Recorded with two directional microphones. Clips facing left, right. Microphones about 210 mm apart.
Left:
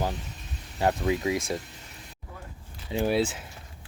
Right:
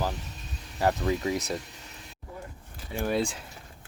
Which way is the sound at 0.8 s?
20° left (ahead or behind).